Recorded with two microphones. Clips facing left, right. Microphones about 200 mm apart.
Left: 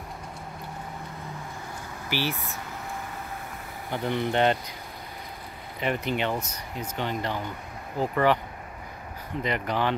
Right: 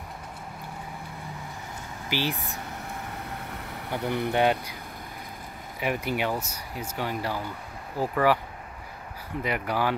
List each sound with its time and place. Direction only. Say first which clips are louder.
2.0 s speech: even; 15° right (ahead or behind)
3.9 s speech: even; 10° right (ahead or behind)
5.8 s speech: even; 10° right (ahead or behind)
9.4 s speech: even; 10° right (ahead or behind)